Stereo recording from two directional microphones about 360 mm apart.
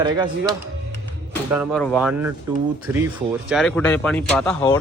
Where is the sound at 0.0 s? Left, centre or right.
Centre.